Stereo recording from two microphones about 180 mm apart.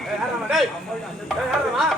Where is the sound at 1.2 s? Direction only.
Centre (ahead or behind).